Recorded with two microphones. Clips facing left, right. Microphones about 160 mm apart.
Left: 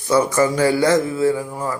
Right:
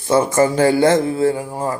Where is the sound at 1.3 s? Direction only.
40° right (ahead or behind).